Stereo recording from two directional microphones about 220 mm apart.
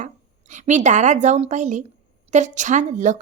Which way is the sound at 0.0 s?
35° right (ahead or behind).